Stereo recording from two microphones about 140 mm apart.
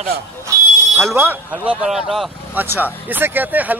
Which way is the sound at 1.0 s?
15° right (ahead or behind).